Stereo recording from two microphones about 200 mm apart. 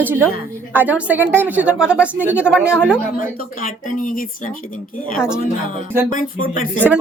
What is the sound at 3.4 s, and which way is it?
A woman's voice, 45° left (ahead or behind).